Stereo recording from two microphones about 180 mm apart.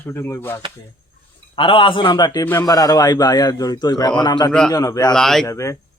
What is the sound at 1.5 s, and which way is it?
A man's voice, 30° left (ahead or behind).